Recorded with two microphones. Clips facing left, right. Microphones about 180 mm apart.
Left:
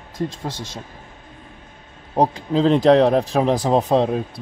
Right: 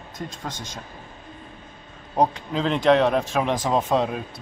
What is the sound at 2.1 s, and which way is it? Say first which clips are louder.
A man's voice: left 4 dB; 30° left (ahead or behind).